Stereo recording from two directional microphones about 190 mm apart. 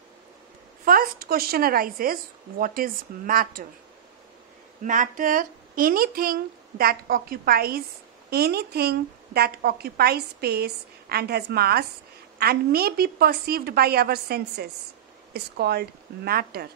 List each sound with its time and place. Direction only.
0.8 s speech: 50° right (ahead or behind)
4.8 s a woman's voice: 45° right (ahead or behind)